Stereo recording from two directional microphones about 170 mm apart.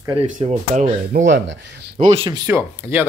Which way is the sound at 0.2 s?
40° right (ahead or behind).